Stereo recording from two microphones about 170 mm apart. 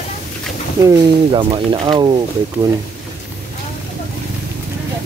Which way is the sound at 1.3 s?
30° right (ahead or behind).